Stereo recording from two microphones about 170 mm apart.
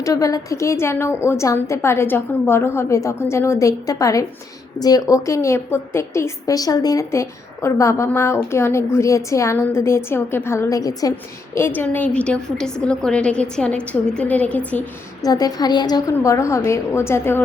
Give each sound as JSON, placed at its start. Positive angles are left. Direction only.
{"t": 0.0, "sound": "a woman's voice", "side_deg": 20}
{"t": 15.2, "sound": "a woman's voice", "side_deg": 20}